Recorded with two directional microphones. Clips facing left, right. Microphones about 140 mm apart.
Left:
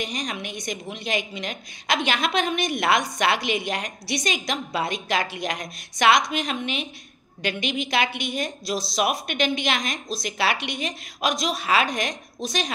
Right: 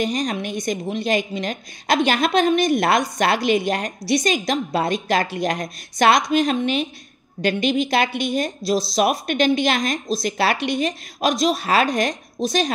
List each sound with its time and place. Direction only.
0.0 s a woman's voice: 40° right (ahead or behind)